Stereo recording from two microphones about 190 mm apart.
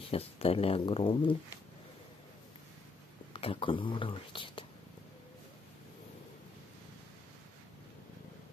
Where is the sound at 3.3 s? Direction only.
30° left (ahead or behind).